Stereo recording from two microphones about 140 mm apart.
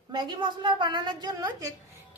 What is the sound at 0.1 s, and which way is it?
A woman's voice, 30° right (ahead or behind).